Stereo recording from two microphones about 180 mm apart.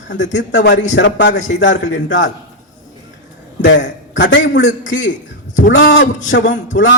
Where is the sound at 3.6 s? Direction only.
85° left.